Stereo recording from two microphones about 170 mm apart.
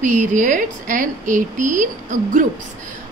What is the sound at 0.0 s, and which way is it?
A woman's voice, 45° right (ahead or behind).